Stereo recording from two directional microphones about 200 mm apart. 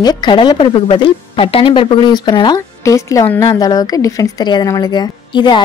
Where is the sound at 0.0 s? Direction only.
20° left (ahead or behind).